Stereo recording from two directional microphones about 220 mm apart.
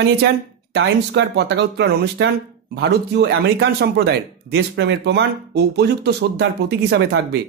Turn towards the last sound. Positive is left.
turn(degrees=-50)  # may be behind; listen again after turning